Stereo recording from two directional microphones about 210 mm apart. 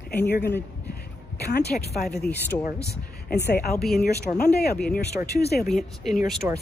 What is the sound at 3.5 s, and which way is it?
Speech, 50° left (ahead or behind).